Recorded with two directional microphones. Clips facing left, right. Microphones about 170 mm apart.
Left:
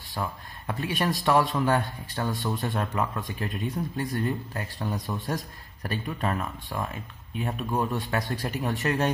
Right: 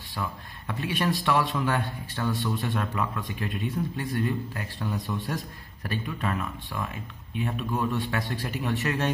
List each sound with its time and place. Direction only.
0.1 s a man's voice: 40° left (ahead or behind)